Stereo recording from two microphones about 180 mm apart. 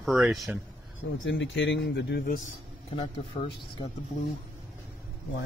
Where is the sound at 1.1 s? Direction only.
90° left; by 2.3 s 65° left (ahead or behind).